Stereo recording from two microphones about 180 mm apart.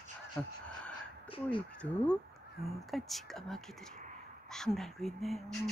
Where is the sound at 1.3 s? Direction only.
30° left (ahead or behind).